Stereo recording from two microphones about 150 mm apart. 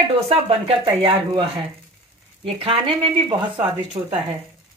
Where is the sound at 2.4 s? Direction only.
35° right (ahead or behind).